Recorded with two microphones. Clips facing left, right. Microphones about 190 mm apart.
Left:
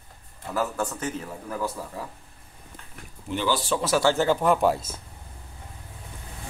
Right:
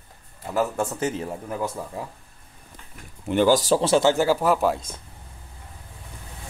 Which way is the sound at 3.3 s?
50° right (ahead or behind).